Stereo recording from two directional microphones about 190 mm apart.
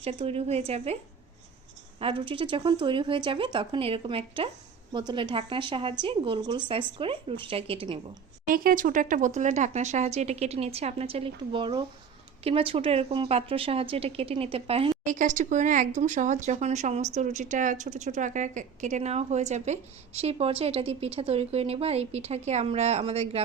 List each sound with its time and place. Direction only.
0.0 s a woman's voice: 30° right (ahead or behind)
8.4 s a woman's voice: 50° right (ahead or behind); by 23.4 s 35° right (ahead or behind)